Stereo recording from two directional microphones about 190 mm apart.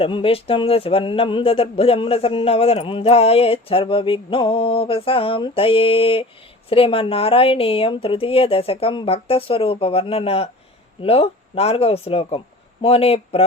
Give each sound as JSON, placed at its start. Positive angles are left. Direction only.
{"t": 0.0, "sound": "speech", "side_deg": 30}